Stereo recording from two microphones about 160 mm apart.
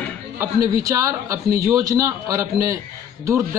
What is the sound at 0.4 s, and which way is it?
A woman's voice, 20° right (ahead or behind).